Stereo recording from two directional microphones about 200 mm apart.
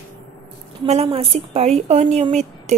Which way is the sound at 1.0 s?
30° right (ahead or behind).